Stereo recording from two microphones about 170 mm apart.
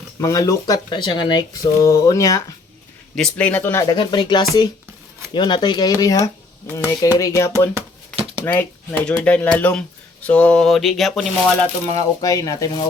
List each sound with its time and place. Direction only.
0.2 s speech: 20° left (ahead or behind)
3.2 s speech: 5° left (ahead or behind)
3.9 s speech: 25° left (ahead or behind); by 11.7 s centre (ahead or behind)
11.9 s speech: 20° left (ahead or behind)